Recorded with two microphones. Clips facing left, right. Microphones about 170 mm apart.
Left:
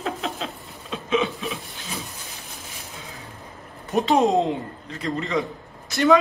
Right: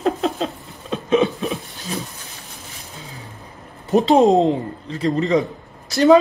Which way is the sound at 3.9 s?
35° right (ahead or behind).